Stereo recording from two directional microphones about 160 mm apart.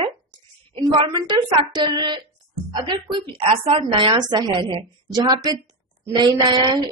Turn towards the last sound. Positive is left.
turn(degrees=-25)  # may be behind; listen again after turning